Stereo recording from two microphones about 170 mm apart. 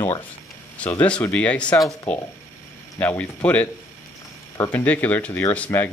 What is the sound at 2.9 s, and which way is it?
Speech, 10° left (ahead or behind).